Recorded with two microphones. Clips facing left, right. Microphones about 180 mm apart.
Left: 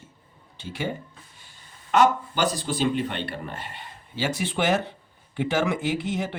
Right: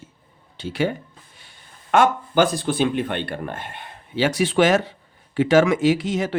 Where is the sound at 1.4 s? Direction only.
65° right (ahead or behind).